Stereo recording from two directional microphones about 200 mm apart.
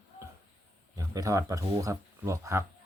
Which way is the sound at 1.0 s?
15° right (ahead or behind).